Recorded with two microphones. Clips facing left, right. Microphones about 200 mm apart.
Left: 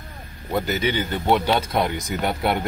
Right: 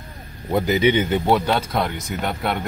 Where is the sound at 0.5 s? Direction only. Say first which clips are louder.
Right 5 dB; 15° right (ahead or behind).